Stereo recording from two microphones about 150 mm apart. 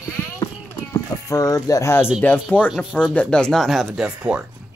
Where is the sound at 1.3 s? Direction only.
20° left (ahead or behind).